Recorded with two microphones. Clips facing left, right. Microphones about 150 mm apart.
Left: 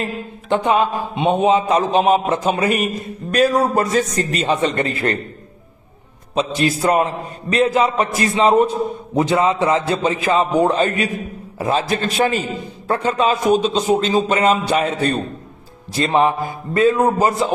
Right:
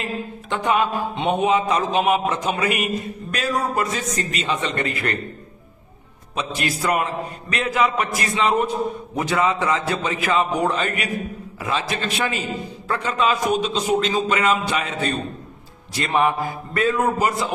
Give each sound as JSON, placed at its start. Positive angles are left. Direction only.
{"t": 0.6, "sound": "a man's voice", "side_deg": 25}
{"t": 0.9, "sound": "mantra", "side_deg": 15}
{"t": 1.3, "sound": "a man's voice", "side_deg": 25}
{"t": 6.3, "sound": "a man's voice", "side_deg": 30}
{"t": 15.9, "sound": "a man's voice", "side_deg": 30}